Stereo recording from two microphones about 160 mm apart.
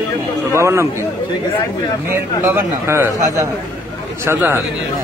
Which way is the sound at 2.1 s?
15° right (ahead or behind).